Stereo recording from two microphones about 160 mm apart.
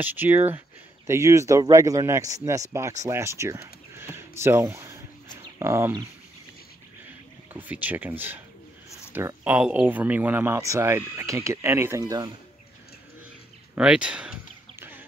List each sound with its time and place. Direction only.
0.0 s speech: 10° right (ahead or behind)
7.5 s speech: 10° right (ahead or behind)
13.7 s a sound: 5° right (ahead or behind)